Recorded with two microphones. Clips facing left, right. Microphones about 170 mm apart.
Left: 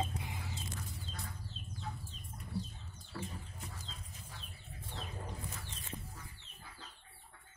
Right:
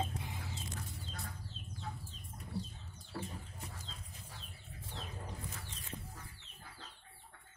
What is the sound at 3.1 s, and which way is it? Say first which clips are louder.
Chicken: right 1 dB; 30° right (ahead or behind).